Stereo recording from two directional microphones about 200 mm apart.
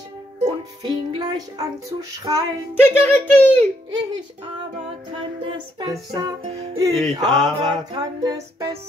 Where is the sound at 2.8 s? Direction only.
10° left (ahead or behind).